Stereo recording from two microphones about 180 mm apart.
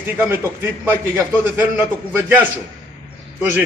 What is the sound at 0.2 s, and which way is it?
A man's voice, 10° right (ahead or behind).